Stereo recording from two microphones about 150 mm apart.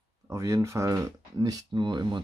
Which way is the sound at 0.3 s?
20° right (ahead or behind).